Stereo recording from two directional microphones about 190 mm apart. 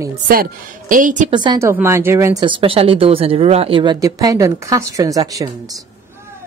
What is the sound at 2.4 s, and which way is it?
Speech, 30° right (ahead or behind).